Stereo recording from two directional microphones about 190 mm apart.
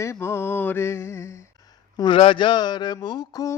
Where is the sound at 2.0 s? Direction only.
25° left (ahead or behind).